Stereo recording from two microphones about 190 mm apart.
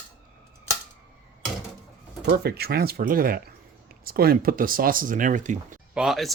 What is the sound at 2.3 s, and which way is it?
Speech, 55° right (ahead or behind).